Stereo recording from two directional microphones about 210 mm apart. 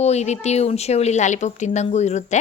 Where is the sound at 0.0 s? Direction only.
30° left (ahead or behind).